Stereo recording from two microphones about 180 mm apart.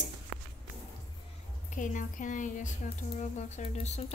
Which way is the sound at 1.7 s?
45° left (ahead or behind).